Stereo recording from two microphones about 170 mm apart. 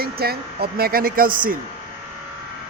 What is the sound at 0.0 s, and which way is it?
Speech, 65° right (ahead or behind).